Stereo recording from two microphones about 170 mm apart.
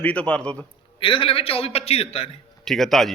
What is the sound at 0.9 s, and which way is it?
A man's voice, 30° left (ahead or behind).